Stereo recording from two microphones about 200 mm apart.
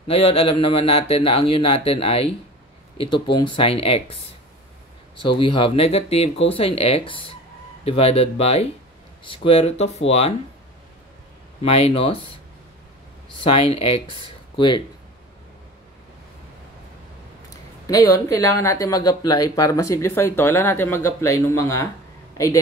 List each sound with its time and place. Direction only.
0.1 s speech: 30° left (ahead or behind)
5.4 s speech: 25° left (ahead or behind)
11.6 s speech: 30° left (ahead or behind)
13.4 s speech: 30° left (ahead or behind)
17.8 s speech: 15° left (ahead or behind)